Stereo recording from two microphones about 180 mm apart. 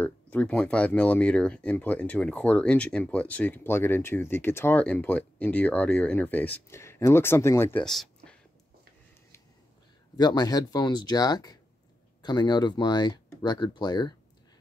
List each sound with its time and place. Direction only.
0.0 s speech: 10° left (ahead or behind)
10.1 s speech: 25° left (ahead or behind)